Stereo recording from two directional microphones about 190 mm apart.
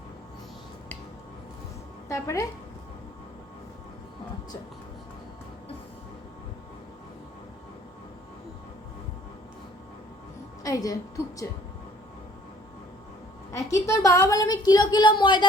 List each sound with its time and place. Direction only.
2.0 s a woman's voice: 15° left (ahead or behind)
10.6 s a sound: 20° left (ahead or behind)
13.5 s a woman's voice: 15° left (ahead or behind)